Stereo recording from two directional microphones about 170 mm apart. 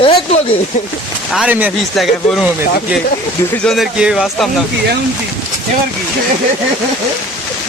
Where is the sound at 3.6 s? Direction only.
Centre (ahead or behind).